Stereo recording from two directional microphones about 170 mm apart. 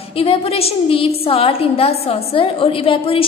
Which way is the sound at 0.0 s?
35° left (ahead or behind).